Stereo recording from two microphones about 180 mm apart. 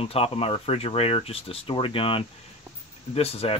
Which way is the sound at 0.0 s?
35° left (ahead or behind).